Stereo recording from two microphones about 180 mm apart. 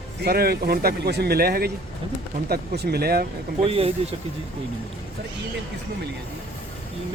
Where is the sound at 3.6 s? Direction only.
35° right (ahead or behind).